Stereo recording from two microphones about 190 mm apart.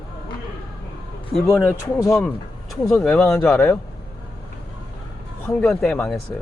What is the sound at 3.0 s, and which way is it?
Speech, 10° left (ahead or behind).